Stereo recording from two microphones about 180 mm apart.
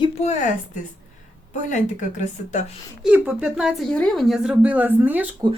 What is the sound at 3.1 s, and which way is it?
Speech, 5° right (ahead or behind).